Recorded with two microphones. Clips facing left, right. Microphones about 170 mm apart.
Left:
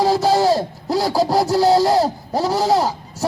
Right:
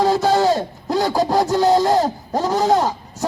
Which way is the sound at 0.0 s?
10° left (ahead or behind).